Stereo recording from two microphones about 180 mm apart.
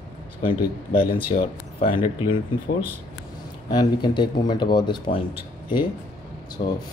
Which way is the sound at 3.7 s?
25° left (ahead or behind).